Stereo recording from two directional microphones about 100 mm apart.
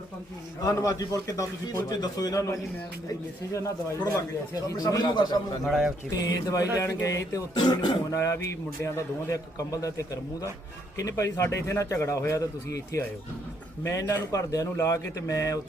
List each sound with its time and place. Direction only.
0.6 s speech: 35° left (ahead or behind)
5.6 s a man's voice: centre (ahead or behind)
6.1 s speech: 35° left (ahead or behind)
7.5 s speech: 45° left (ahead or behind)
8.1 s a man's voice: 30° left (ahead or behind)
14.3 s speech: 35° left (ahead or behind)